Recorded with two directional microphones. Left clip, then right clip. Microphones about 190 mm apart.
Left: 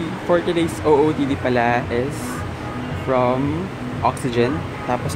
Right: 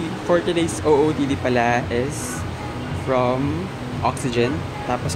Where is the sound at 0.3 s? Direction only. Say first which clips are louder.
Left 1 dB; 5° left (ahead or behind).